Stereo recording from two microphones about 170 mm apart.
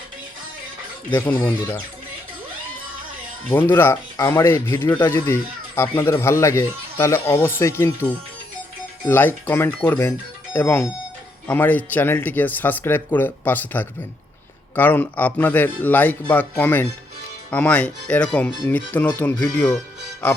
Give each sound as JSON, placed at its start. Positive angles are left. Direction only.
{"t": 1.1, "sound": "speech", "side_deg": 10}
{"t": 3.7, "sound": "speech", "side_deg": 15}
{"t": 9.0, "sound": "speech", "side_deg": 15}